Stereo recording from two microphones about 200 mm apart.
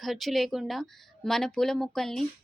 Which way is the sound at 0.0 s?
Centre (ahead or behind).